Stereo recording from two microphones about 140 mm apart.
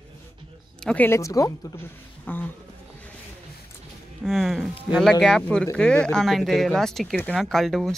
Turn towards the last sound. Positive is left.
turn(degrees=0)  # may be behind; listen again after turning